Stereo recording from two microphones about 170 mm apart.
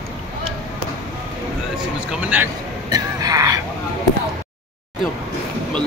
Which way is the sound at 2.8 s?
20° right (ahead or behind).